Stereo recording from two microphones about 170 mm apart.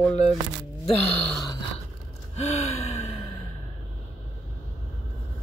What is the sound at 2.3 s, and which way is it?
Gasp, 40° left (ahead or behind).